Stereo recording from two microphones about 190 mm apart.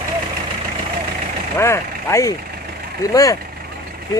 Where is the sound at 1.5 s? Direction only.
15° left (ahead or behind).